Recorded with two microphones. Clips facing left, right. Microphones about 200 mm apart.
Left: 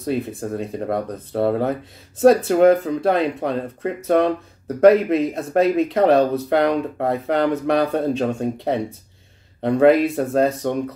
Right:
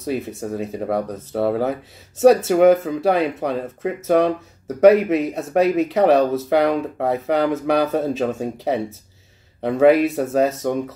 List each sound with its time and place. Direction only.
0.0 s speech: centre (ahead or behind)